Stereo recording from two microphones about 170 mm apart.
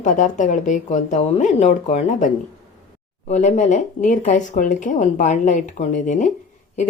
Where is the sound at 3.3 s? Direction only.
45° left (ahead or behind).